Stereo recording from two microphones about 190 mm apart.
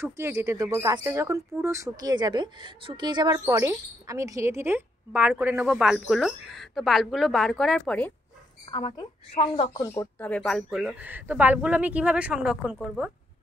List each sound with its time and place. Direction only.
0.0 s speech: 15° right (ahead or behind); by 8.1 s 5° left (ahead or behind)
8.6 s a woman's voice: 25° left (ahead or behind)
9.8 s speech: 15° left (ahead or behind); by 13.1 s 5° right (ahead or behind)